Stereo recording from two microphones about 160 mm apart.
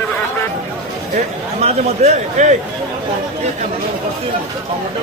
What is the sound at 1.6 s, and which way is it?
Speech, 45° right (ahead or behind).